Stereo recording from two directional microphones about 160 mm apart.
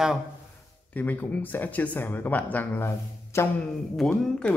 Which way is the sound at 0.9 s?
10° left (ahead or behind).